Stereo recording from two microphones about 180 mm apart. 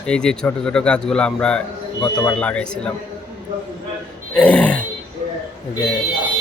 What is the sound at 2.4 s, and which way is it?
Speech, 5° left (ahead or behind).